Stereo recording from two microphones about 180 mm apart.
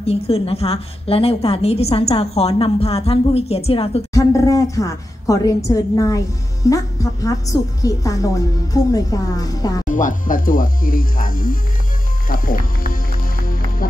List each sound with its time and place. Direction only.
0.0 s a woman's voice: 35° left (ahead or behind)
4.1 s a woman's voice: 20° left (ahead or behind)
9.8 s speech: 45° left (ahead or behind)
13.4 s music: 50° left (ahead or behind)